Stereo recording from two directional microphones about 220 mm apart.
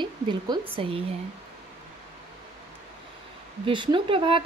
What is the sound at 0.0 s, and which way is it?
Speech, 20° right (ahead or behind).